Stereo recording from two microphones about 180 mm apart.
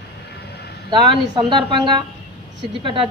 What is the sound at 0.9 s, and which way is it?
A woman's voice, 25° right (ahead or behind).